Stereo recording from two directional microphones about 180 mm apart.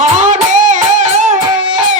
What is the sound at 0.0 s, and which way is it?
Music, 40° right (ahead or behind).